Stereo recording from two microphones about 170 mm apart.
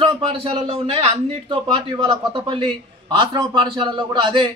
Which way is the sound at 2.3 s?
30° right (ahead or behind).